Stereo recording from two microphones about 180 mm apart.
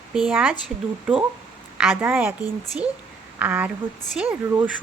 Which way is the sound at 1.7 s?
5° right (ahead or behind).